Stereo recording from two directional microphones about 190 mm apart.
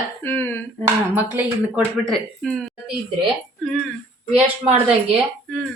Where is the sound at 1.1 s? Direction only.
10° right (ahead or behind).